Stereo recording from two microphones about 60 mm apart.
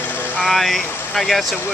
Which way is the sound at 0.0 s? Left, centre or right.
Left.